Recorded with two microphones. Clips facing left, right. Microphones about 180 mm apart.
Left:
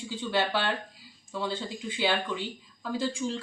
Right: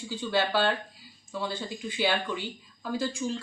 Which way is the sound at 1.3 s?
20° left (ahead or behind).